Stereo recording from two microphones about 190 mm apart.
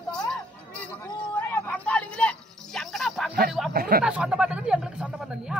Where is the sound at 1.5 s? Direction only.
10° left (ahead or behind).